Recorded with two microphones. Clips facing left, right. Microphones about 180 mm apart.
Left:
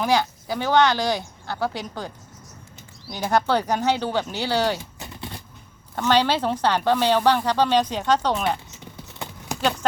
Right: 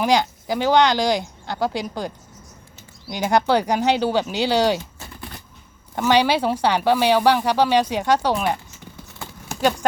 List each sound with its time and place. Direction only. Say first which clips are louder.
0.0 s speech: right 2 dB; 15° right (ahead or behind)
6.0 s speech: right 2 dB; 10° right (ahead or behind)